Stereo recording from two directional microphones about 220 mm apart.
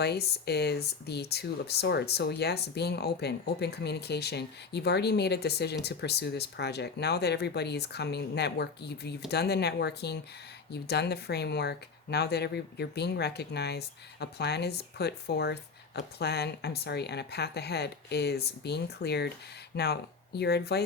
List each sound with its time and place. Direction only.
0.0 s speech: 45° left (ahead or behind)